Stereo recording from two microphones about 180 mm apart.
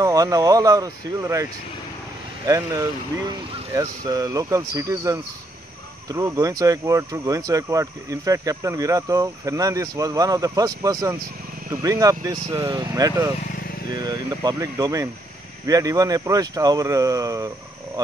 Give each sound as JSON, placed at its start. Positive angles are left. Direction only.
{"t": 0.0, "sound": "speech", "side_deg": -20}